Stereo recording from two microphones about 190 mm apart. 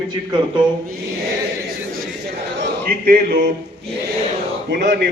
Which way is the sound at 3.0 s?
55° right (ahead or behind).